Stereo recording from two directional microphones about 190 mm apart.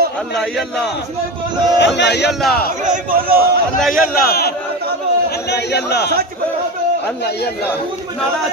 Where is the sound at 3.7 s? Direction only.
Centre (ahead or behind).